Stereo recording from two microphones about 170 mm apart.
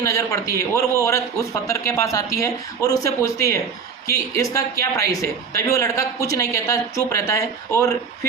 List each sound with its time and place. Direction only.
0.0 s speech: 20° left (ahead or behind)